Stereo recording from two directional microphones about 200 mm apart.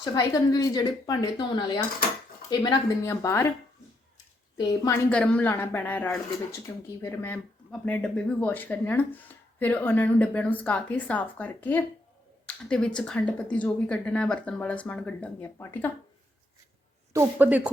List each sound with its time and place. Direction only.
0.0 s speech: 20° left (ahead or behind)
4.9 s speech: 5° left (ahead or behind)
17.1 s speech: 10° right (ahead or behind)